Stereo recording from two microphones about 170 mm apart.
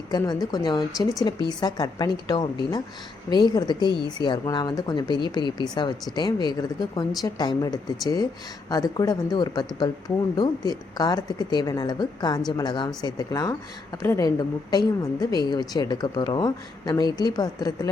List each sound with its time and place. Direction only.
0.1 s a woman's voice: 25° left (ahead or behind)